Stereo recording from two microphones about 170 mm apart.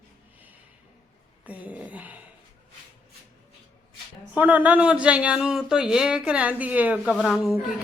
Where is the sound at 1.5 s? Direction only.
10° right (ahead or behind).